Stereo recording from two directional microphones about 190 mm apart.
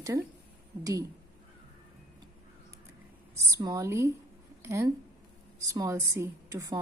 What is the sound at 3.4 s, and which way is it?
A woman's voice, 15° right (ahead or behind).